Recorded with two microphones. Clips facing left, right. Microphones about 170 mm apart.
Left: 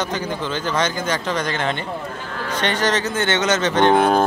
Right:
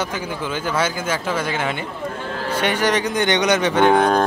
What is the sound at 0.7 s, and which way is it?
Speech, 5° right (ahead or behind).